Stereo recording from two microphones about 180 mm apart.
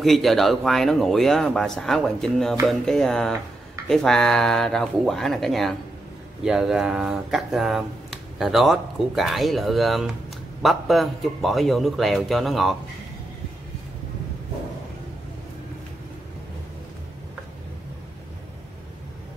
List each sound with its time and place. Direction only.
0.0 s speech: centre (ahead or behind)